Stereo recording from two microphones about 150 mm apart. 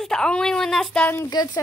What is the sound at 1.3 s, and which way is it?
Speech, 25° left (ahead or behind).